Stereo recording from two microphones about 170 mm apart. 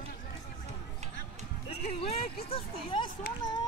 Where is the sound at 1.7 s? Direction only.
40° left (ahead or behind).